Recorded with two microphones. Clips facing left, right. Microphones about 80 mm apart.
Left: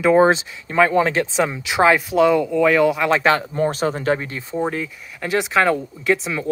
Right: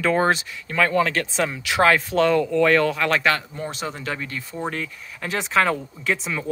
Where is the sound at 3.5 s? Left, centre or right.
Left.